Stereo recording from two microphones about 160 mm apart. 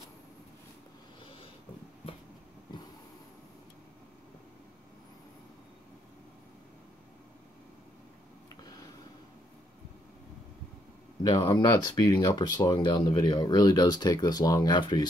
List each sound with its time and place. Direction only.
11.2 s speech: 25° left (ahead or behind)